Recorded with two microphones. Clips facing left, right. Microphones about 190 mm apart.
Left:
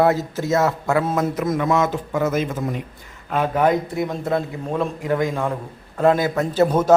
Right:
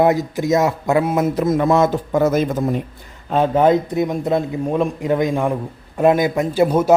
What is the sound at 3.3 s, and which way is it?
A man's voice, 25° right (ahead or behind).